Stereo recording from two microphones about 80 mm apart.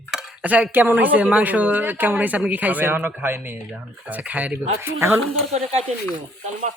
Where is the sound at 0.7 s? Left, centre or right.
Right.